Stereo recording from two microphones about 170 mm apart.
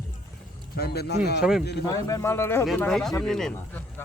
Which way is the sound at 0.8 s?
70° left (ahead or behind).